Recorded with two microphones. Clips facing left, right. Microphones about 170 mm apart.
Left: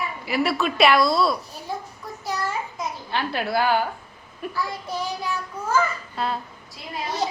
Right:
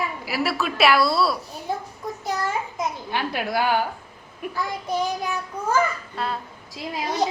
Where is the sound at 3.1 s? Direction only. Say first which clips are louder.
Left 2 dB; 15° right (ahead or behind).